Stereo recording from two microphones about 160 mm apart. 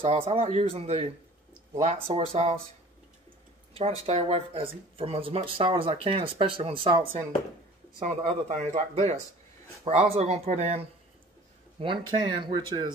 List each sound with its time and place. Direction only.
0.0 s speech: 35° right (ahead or behind)
3.7 s speech: 40° right (ahead or behind)
8.0 s speech: 45° right (ahead or behind)
11.8 s speech: 30° right (ahead or behind)